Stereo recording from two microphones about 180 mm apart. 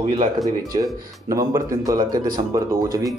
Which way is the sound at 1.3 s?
20° right (ahead or behind).